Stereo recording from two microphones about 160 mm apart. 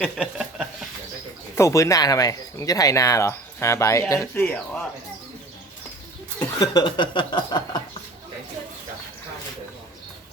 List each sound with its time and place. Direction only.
0.0 s a sound: 5° right (ahead or behind)
1.5 s speech: 20° left (ahead or behind)
6.4 s speech: 25° left (ahead or behind)